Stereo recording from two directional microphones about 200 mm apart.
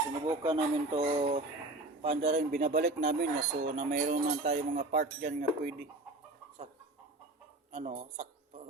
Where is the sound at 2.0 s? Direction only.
30° right (ahead or behind).